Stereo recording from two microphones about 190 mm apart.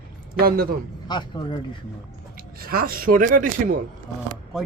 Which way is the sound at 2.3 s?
50° right (ahead or behind).